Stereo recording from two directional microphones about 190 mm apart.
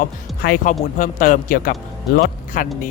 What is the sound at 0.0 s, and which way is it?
Speech, 50° left (ahead or behind).